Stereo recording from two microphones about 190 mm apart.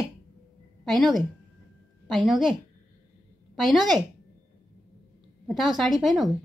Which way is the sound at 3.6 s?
Centre (ahead or behind).